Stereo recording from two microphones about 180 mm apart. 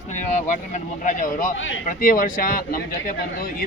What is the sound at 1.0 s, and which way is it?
Speech, 45° left (ahead or behind).